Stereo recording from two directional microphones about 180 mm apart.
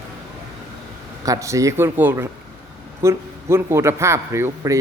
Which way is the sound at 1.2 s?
20° right (ahead or behind).